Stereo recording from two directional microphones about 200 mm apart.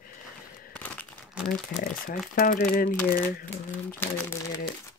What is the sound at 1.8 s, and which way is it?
Speech, 40° left (ahead or behind).